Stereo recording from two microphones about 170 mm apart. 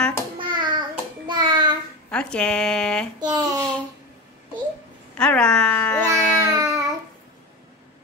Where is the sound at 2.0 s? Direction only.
5° left (ahead or behind).